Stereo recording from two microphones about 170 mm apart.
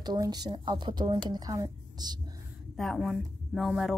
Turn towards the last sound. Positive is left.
turn(degrees=0)  # may be behind; listen again after turning